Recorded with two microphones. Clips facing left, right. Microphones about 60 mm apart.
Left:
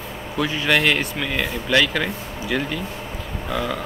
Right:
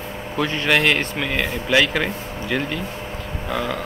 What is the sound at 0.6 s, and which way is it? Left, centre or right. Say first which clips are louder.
Speech: right 1 dB; centre.